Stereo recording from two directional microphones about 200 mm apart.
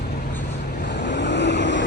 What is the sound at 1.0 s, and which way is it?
Vehicle, 60° left (ahead or behind).